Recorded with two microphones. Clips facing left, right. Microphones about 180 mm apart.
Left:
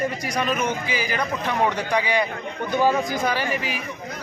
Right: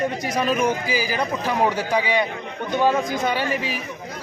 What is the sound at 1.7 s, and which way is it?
Speech, 5° right (ahead or behind).